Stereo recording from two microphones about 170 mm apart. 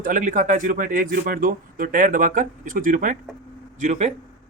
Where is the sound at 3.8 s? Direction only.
40° right (ahead or behind).